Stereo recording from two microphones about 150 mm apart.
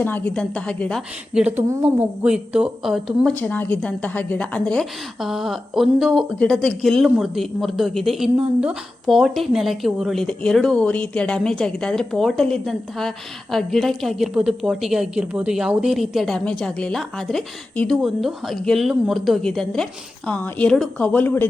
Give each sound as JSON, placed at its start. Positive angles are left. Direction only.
{"t": 0.0, "sound": "a woman's voice", "side_deg": 15}
{"t": 1.3, "sound": "a woman's voice", "side_deg": -5}
{"t": 3.3, "sound": "a woman's voice", "side_deg": 10}